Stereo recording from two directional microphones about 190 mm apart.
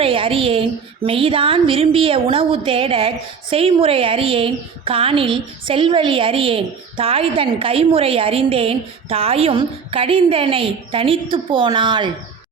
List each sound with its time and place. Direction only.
0.0 s a woman's voice: 30° right (ahead or behind)